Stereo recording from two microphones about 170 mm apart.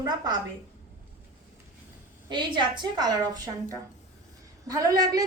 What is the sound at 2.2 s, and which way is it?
A woman's voice, 25° right (ahead or behind).